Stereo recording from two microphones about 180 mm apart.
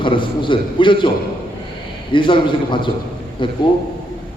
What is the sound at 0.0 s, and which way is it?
A man's voice, 25° left (ahead or behind).